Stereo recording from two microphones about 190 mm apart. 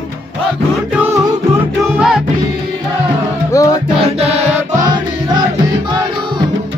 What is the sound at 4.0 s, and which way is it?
Music, 35° right (ahead or behind).